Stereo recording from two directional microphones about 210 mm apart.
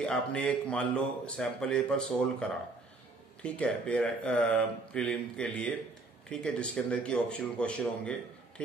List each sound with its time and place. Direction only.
0.0 s speech: 5° left (ahead or behind)
3.4 s speech: 5° left (ahead or behind)